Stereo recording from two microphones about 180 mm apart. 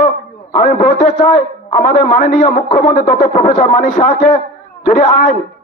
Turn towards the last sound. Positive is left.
turn(degrees=45)  # may be behind; listen again after turning